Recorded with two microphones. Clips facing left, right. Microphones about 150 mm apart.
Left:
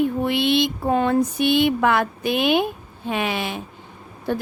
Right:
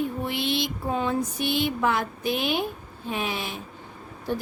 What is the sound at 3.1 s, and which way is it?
Speech, 75° left (ahead or behind).